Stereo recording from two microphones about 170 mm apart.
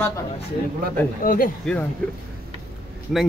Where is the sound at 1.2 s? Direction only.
55° left (ahead or behind).